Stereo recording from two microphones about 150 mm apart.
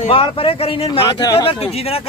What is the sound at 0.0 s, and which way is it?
Speech, 40° left (ahead or behind).